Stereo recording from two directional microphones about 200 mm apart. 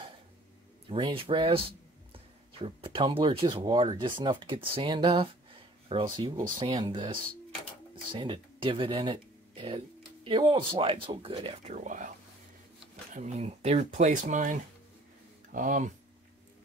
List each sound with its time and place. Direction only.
0.8 s speech: 25° right (ahead or behind)
13.1 s speech: 35° right (ahead or behind)